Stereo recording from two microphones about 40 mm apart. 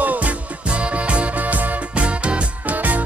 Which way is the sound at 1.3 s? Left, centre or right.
Right.